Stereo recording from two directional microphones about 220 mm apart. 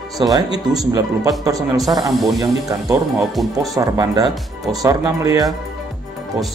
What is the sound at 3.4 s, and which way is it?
Speech, centre (ahead or behind).